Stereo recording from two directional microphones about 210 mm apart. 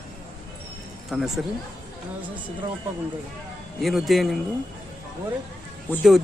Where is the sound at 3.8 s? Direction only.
Centre (ahead or behind).